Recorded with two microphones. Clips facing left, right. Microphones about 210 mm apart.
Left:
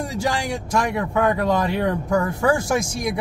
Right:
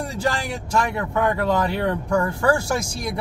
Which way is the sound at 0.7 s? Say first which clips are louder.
Left 1 dB; 15° left (ahead or behind).